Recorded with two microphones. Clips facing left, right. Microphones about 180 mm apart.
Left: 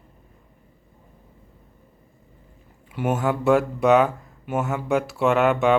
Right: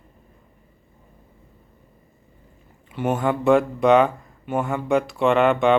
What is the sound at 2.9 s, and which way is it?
Speech, 10° left (ahead or behind).